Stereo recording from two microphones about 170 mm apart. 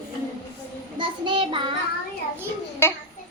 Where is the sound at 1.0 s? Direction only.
30° right (ahead or behind).